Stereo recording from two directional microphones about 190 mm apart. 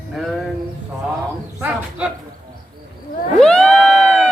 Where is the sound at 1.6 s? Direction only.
5° right (ahead or behind).